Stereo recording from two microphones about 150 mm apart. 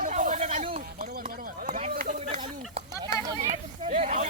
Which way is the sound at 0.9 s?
65° right (ahead or behind).